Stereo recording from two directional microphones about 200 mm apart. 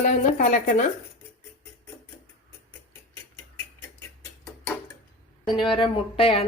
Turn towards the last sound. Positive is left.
turn(degrees=25)  # may be behind; listen again after turning